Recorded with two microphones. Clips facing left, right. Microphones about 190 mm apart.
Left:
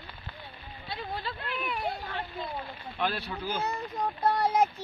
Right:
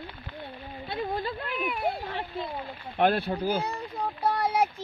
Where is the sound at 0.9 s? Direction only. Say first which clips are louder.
Right 6 dB; 50° right (ahead or behind).